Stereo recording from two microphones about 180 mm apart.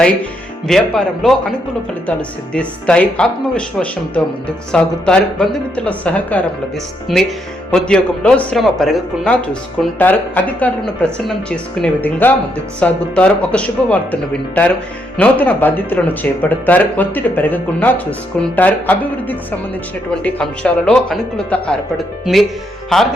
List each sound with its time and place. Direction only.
0.7 s speech: centre (ahead or behind)